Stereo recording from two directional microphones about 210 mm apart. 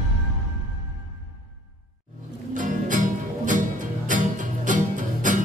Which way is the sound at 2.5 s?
40° right (ahead or behind).